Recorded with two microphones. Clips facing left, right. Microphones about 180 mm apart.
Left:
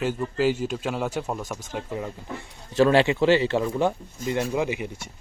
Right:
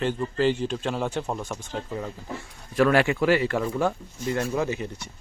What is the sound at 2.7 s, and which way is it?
Speech, 25° left (ahead or behind).